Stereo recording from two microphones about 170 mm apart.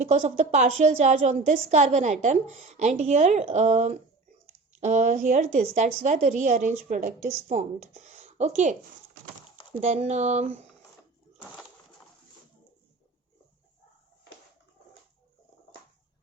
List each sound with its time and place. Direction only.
0.0 s a woman's voice: 40° right (ahead or behind)
9.8 s speech: 40° right (ahead or behind)